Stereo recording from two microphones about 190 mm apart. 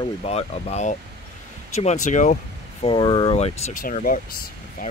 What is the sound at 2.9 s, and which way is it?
Speech, 25° left (ahead or behind).